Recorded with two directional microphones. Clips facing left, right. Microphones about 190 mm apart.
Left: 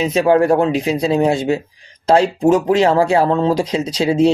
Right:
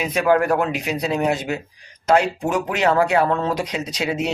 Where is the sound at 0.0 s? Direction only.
25° left (ahead or behind).